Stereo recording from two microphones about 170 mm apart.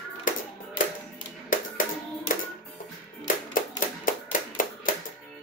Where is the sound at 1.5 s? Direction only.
50° left (ahead or behind).